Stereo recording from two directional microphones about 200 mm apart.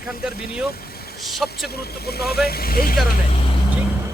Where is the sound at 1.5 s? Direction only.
50° left (ahead or behind).